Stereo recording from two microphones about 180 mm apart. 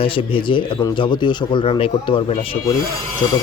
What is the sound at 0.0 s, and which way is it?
Speech, 30° left (ahead or behind).